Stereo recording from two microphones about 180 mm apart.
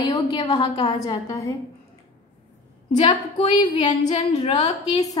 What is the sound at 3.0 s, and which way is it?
Speech, 25° left (ahead or behind).